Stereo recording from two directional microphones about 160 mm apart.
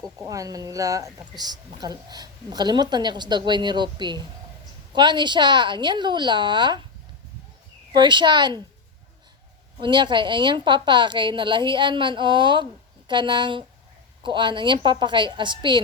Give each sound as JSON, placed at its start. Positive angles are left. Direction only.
{"t": 0.2, "sound": "a woman's voice", "side_deg": -20}
{"t": 7.9, "sound": "a woman's voice", "side_deg": -30}
{"t": 9.7, "sound": "a woman's voice", "side_deg": -30}